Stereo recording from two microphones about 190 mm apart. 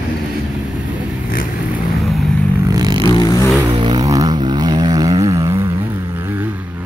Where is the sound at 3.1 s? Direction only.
20° left (ahead or behind).